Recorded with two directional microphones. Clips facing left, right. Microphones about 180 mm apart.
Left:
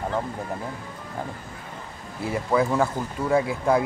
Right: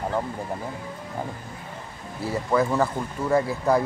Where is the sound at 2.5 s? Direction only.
5° left (ahead or behind).